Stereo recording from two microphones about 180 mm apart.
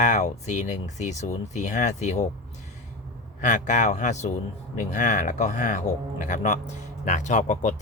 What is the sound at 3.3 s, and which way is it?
Speech, 45° left (ahead or behind).